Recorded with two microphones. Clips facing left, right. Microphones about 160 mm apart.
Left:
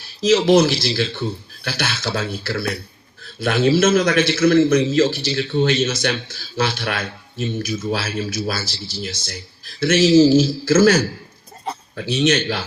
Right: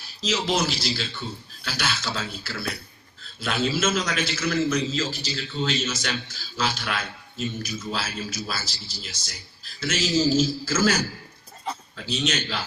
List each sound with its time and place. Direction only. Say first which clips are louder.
0.2 s a man's voice: left 12 dB; 65° left (ahead or behind)
9.8 s a man's voice: left 11 dB; 65° left (ahead or behind)